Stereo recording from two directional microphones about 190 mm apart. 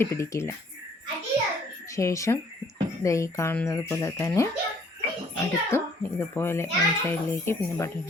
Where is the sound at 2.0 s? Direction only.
15° left (ahead or behind).